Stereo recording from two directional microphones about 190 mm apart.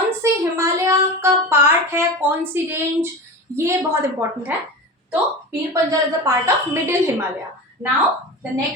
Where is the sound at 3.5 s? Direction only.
15° right (ahead or behind).